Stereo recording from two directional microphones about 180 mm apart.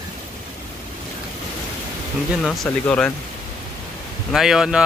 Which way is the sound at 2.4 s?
10° left (ahead or behind).